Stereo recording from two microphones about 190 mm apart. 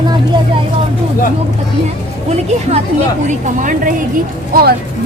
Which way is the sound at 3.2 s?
40° right (ahead or behind).